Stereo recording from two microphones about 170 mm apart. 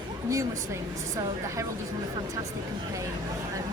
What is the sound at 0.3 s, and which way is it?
A woman's voice, 20° right (ahead or behind).